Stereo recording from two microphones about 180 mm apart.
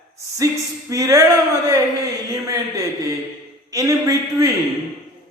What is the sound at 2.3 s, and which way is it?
A man's voice, 20° right (ahead or behind).